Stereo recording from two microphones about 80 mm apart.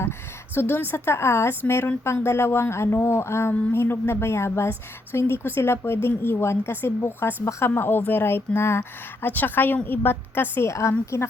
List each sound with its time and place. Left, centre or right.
0.5 s speech: left